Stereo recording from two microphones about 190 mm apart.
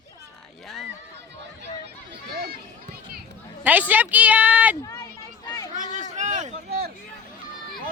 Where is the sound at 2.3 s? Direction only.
55° right (ahead or behind).